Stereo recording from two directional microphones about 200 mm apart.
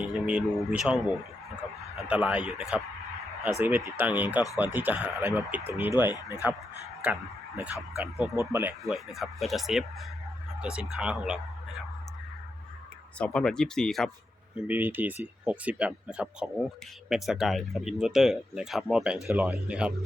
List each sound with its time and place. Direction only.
0.0 s speech: 5° right (ahead or behind)
2.0 s speech: 5° right (ahead or behind)
6.1 s speech: 20° left (ahead or behind)
7.0 s speech: 5° right (ahead or behind)
8.8 s speech: centre (ahead or behind)
13.1 s speech: 5° left (ahead or behind)
14.5 s speech: 10° right (ahead or behind)